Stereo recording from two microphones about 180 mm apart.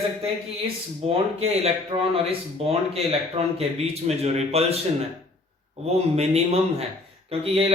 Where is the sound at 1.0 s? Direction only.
35° right (ahead or behind).